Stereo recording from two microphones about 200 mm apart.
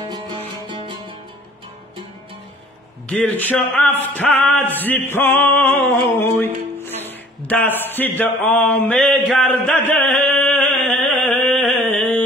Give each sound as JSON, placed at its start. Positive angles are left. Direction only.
{"t": 0.7, "sound": "music", "side_deg": -25}
{"t": 3.1, "sound": "music", "side_deg": 5}
{"t": 7.0, "sound": "a sound", "side_deg": 10}